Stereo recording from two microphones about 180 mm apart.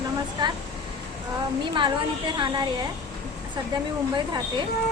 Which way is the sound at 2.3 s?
25° right (ahead or behind).